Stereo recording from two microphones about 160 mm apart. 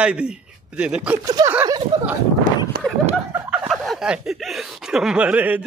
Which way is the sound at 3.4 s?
Centre (ahead or behind).